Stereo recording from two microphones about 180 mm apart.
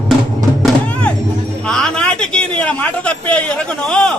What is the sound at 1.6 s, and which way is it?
Music, 5° left (ahead or behind).